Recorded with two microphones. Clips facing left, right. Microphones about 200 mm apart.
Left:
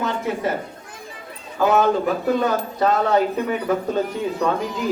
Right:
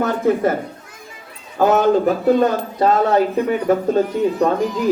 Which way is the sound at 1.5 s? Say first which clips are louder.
Right 4 dB; 45° right (ahead or behind).